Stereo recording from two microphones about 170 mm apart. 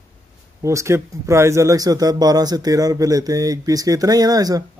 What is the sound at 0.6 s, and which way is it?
A man's voice, 15° right (ahead or behind).